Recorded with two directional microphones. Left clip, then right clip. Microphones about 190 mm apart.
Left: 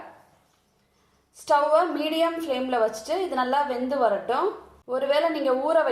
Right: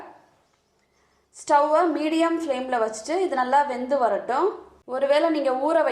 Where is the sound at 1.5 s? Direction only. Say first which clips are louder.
Right 1 dB; 20° right (ahead or behind).